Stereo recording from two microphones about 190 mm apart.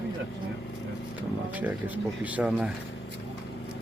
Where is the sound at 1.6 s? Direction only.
10° right (ahead or behind).